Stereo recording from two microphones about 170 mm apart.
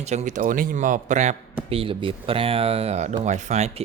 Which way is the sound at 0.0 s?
40° right (ahead or behind).